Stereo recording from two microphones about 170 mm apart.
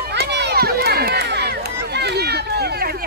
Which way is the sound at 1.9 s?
75° right (ahead or behind).